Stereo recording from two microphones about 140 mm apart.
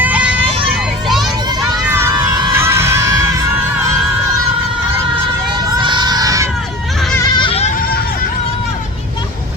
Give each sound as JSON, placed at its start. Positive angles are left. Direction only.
{"t": 0.0, "sound": "vehicle", "side_deg": -10}
{"t": 1.9, "sound": "a sound", "side_deg": -20}
{"t": 2.1, "sound": "music", "side_deg": -30}
{"t": 2.5, "sound": "music", "side_deg": -20}
{"t": 5.7, "sound": "crowd", "side_deg": -35}
{"t": 7.3, "sound": "goat", "side_deg": 35}